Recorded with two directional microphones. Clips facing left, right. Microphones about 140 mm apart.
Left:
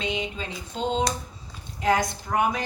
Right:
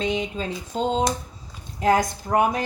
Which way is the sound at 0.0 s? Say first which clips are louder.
Right 4 dB; 40° right (ahead or behind).